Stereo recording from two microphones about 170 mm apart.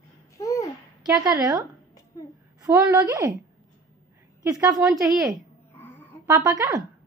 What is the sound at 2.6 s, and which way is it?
Speech, 20° right (ahead or behind).